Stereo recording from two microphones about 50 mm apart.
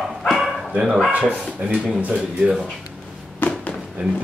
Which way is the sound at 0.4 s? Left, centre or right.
Centre.